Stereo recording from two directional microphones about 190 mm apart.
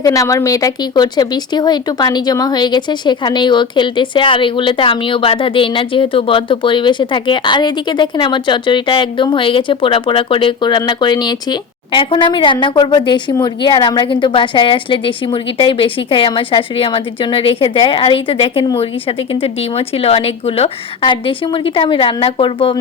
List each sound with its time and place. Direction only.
0.0 s speech: 20° left (ahead or behind)